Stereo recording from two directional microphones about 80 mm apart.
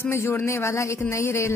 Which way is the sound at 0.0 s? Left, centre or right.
Left.